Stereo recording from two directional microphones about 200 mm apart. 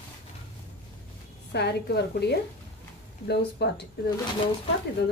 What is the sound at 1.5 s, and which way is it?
Speech, 55° left (ahead or behind).